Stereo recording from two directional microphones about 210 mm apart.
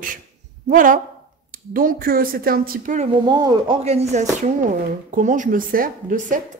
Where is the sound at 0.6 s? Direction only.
40° right (ahead or behind).